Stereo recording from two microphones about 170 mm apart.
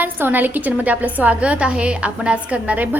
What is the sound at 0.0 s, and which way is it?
A woman's voice, 10° right (ahead or behind).